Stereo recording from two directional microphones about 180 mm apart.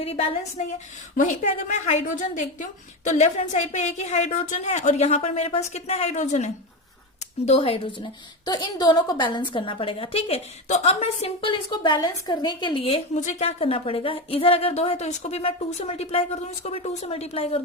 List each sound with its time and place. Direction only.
0.0 s a woman's voice: 35° left (ahead or behind)
1.1 s a woman's voice: 45° left (ahead or behind)